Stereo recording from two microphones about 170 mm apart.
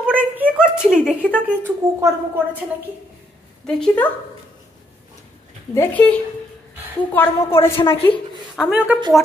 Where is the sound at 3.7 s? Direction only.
5° left (ahead or behind).